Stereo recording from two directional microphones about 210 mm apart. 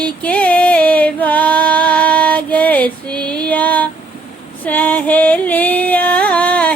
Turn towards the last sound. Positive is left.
turn(degrees=5)  # may be behind; listen again after turning